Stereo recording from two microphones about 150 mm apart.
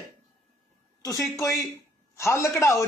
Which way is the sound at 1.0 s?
20° left (ahead or behind).